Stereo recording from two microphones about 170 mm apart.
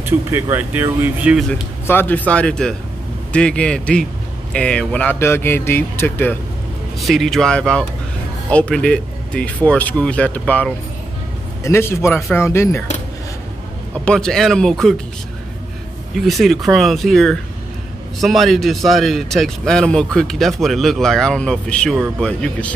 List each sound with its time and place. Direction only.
0.3 s speech: 10° right (ahead or behind)
1.5 s speech: 10° left (ahead or behind)
7.0 s a man's voice: centre (ahead or behind)
14.0 s a man's voice: 5° left (ahead or behind)
16.2 s a man's voice: centre (ahead or behind)